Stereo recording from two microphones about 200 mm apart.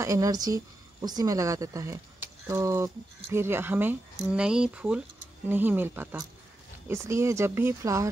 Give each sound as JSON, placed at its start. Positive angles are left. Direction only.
{"t": 0.0, "sound": "speech", "side_deg": -15}